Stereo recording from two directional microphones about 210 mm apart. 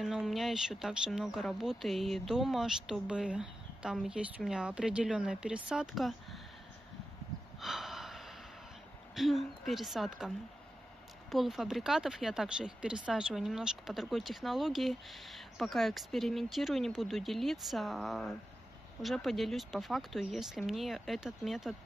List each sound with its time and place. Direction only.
0.0 s speech: centre (ahead or behind)
7.6 s a sound: centre (ahead or behind)
9.1 s speech: centre (ahead or behind)